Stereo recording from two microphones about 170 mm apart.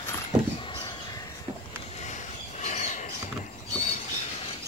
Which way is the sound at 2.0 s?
45° left (ahead or behind).